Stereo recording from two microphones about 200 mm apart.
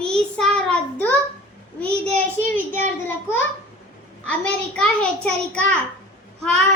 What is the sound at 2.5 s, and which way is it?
Speech, 40° right (ahead or behind).